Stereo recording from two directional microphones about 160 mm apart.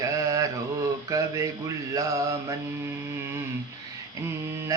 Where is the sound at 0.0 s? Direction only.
20° right (ahead or behind).